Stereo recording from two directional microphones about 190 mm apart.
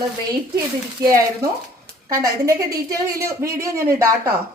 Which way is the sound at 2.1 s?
20° right (ahead or behind).